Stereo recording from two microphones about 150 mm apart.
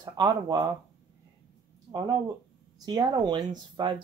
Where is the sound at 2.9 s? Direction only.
30° right (ahead or behind).